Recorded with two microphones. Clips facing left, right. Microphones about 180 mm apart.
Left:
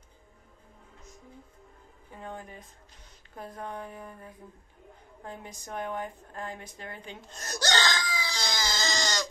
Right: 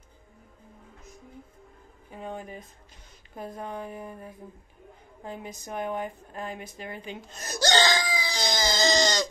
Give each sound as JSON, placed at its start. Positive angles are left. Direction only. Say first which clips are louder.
{"t": 2.0, "sound": "a sound", "louder": "right 4 dB", "side_deg": -20}
{"t": 3.5, "sound": "a woman's voice", "louder": "right 2 dB", "side_deg": -15}
{"t": 7.6, "sound": "screaming", "louder": "right 5 dB", "side_deg": -15}